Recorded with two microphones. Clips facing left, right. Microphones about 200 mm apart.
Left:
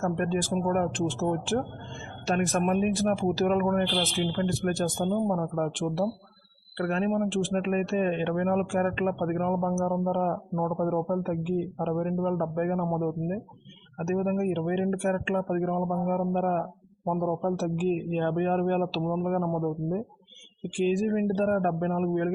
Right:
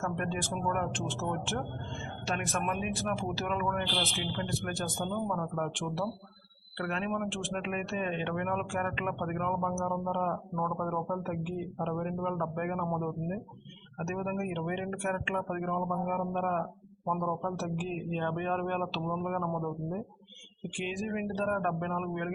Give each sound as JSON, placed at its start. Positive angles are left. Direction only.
{"t": 0.0, "sound": "speech", "side_deg": 40}